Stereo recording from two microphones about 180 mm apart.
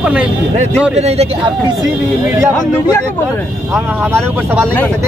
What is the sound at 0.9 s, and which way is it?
Speech, 35° right (ahead or behind).